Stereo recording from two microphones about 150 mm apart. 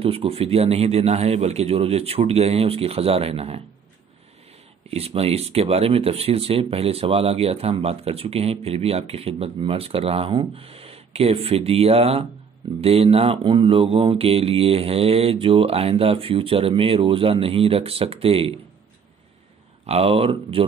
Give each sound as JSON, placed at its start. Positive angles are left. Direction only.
{"t": 0.0, "sound": "a man's voice", "side_deg": -40}
{"t": 4.8, "sound": "speech", "side_deg": -40}
{"t": 19.9, "sound": "speech", "side_deg": -40}